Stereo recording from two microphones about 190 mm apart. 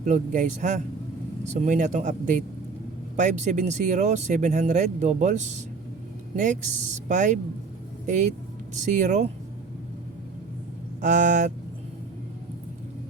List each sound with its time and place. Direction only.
0.0 s speech: 40° right (ahead or behind)
11.0 s speech: 40° right (ahead or behind)